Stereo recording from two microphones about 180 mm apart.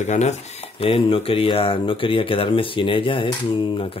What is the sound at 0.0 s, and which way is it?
Speech, 40° left (ahead or behind).